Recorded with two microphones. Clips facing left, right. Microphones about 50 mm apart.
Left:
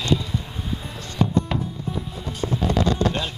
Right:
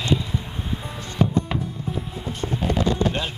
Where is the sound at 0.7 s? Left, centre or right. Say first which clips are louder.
Right 1 dB; centre.